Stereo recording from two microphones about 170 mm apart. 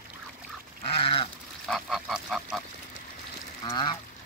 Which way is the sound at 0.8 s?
35° left (ahead or behind).